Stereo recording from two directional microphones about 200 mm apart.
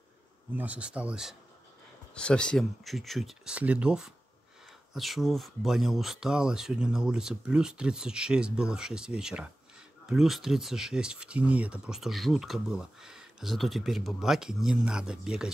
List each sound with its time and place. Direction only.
0.5 s speech: 10° right (ahead or behind)